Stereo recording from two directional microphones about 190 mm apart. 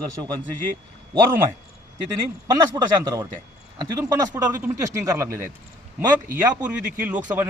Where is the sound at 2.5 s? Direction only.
20° right (ahead or behind).